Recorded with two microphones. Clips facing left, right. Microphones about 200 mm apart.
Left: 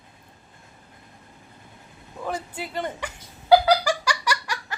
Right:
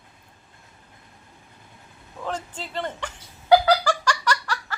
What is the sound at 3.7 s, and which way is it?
Giggle, 10° left (ahead or behind).